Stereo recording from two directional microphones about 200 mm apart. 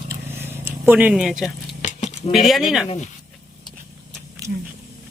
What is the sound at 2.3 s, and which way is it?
Speech, centre (ahead or behind).